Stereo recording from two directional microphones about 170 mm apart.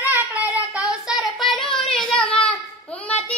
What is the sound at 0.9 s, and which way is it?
Child singing, centre (ahead or behind).